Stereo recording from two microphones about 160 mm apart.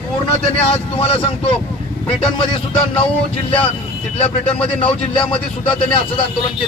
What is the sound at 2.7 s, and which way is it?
Speech, 35° left (ahead or behind).